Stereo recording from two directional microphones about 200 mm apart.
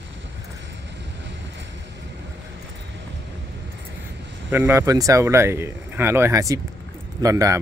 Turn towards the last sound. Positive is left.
turn(degrees=-15)  # may be behind; listen again after turning